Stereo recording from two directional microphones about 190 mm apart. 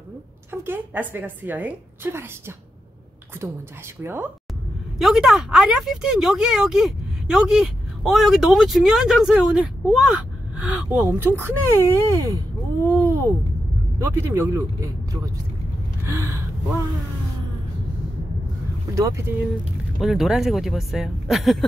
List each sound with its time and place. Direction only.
0.5 s a woman's voice: 10° right (ahead or behind)
4.0 s a woman's voice: 10° right (ahead or behind)
16.1 s a woman's voice: 15° right (ahead or behind)
18.9 s a woman's voice: 15° right (ahead or behind)
20.0 s speech: centre (ahead or behind)